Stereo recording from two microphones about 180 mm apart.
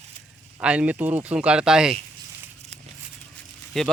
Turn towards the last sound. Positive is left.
turn(degrees=0)  # may be behind; listen again after turning